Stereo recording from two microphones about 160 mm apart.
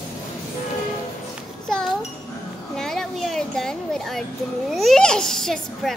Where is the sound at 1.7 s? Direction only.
5° left (ahead or behind).